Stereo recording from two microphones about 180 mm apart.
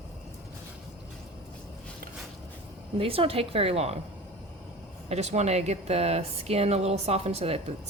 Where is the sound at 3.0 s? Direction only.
30° right (ahead or behind).